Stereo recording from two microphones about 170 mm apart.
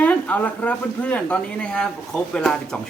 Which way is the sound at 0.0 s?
10° left (ahead or behind).